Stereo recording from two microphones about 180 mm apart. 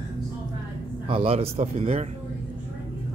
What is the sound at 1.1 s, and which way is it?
Speech, 30° right (ahead or behind).